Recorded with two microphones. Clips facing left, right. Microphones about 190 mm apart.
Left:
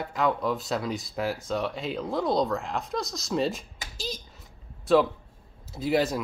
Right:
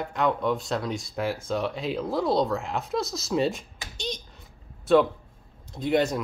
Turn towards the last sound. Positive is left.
turn(degrees=0)  # may be behind; listen again after turning